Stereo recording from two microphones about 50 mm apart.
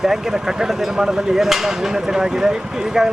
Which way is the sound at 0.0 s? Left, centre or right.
Centre.